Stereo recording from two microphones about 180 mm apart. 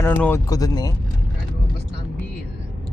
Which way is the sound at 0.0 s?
10° left (ahead or behind).